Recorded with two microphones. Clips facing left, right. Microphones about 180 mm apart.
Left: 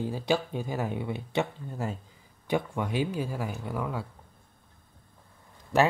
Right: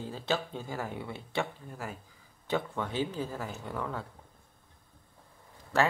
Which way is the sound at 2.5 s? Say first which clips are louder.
Left 3 dB; 15° left (ahead or behind).